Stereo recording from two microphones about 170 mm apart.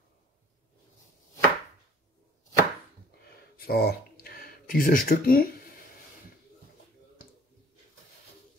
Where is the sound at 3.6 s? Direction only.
65° left (ahead or behind).